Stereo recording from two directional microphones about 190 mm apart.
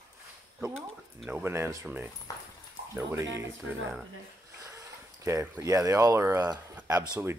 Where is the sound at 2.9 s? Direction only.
15° right (ahead or behind).